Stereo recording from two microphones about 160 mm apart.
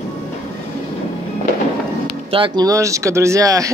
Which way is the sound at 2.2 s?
35° right (ahead or behind).